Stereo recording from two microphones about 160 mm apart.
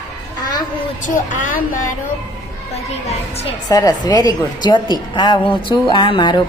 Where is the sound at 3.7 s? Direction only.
20° left (ahead or behind).